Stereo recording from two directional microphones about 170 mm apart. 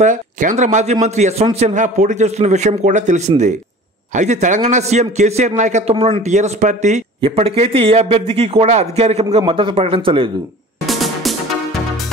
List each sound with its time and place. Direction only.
0.0 s a man's voice: 50° right (ahead or behind)
7.2 s a man's voice: 35° right (ahead or behind)
10.9 s music: centre (ahead or behind)